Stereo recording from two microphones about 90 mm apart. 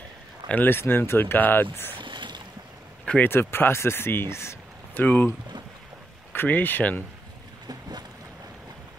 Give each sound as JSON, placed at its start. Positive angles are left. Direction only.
{"t": 0.5, "sound": "speech", "side_deg": 20}
{"t": 2.0, "sound": "boat", "side_deg": -60}
{"t": 3.3, "sound": "speech", "side_deg": 25}
{"t": 5.0, "sound": "speech", "side_deg": 20}
{"t": 6.3, "sound": "speech", "side_deg": 20}